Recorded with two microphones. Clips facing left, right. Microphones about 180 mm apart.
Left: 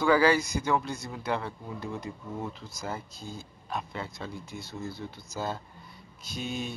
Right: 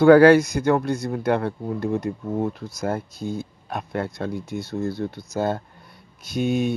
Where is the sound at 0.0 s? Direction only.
60° right (ahead or behind).